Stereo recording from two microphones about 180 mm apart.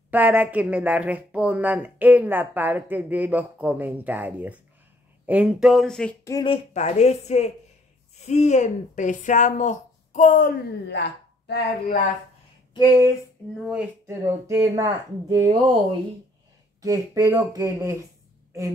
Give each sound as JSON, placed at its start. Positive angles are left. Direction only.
{"t": 0.1, "sound": "speech", "side_deg": -10}
{"t": 6.2, "sound": "a woman's voice", "side_deg": 25}
{"t": 10.9, "sound": "speech", "side_deg": 70}
{"t": 12.7, "sound": "speech", "side_deg": 25}
{"t": 13.7, "sound": "speech", "side_deg": -10}
{"t": 16.8, "sound": "speech", "side_deg": -20}